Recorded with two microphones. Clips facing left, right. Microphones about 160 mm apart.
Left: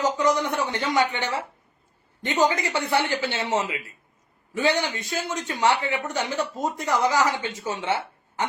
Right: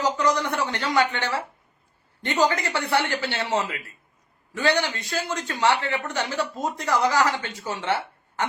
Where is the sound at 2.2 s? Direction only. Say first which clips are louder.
Even; 20° left (ahead or behind).